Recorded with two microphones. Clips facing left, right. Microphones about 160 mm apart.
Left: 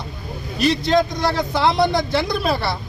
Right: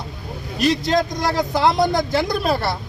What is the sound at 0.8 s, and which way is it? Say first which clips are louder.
Speech: left 2 dB; 40° right (ahead or behind).